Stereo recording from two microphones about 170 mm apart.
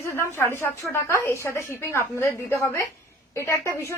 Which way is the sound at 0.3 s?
15° left (ahead or behind).